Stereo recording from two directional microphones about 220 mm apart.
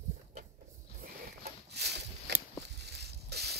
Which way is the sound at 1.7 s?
50° right (ahead or behind).